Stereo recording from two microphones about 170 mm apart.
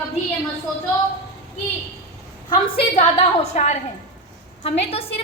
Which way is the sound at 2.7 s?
40° left (ahead or behind).